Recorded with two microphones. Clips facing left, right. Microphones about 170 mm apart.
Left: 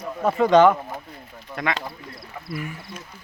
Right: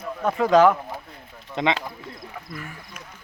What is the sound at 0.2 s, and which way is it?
Speech, centre (ahead or behind).